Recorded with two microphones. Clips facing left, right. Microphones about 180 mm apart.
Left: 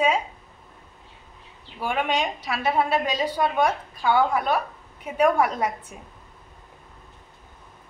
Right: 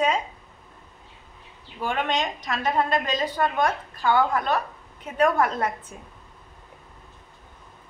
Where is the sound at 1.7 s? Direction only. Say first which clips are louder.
Left 1 dB; 10° left (ahead or behind).